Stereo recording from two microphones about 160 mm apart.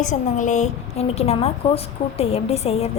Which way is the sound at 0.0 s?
50° left (ahead or behind).